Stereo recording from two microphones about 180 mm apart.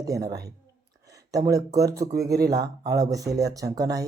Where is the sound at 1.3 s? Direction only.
20° right (ahead or behind).